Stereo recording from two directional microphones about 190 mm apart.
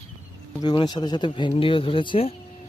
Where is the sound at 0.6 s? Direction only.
20° left (ahead or behind).